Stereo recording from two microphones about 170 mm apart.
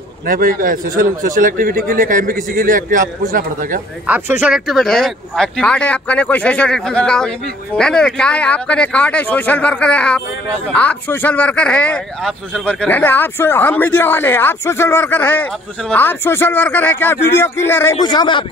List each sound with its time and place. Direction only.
0.3 s a man's voice: 55° right (ahead or behind)
4.1 s speech: 10° right (ahead or behind); by 17.9 s 15° left (ahead or behind)
18.0 s a man's voice: 25° left (ahead or behind)